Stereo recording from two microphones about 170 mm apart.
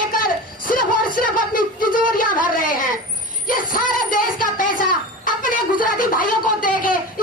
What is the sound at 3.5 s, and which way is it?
Music, 55° left (ahead or behind).